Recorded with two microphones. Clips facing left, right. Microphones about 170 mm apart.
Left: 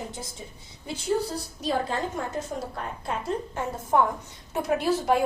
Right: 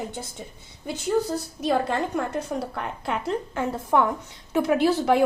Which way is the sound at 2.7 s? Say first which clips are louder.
Right 3 dB; 70° right (ahead or behind).